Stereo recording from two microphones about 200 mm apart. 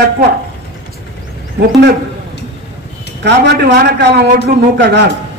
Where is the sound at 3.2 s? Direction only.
55° right (ahead or behind).